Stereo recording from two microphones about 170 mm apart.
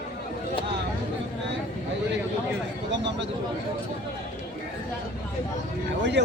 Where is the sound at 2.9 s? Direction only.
90° right.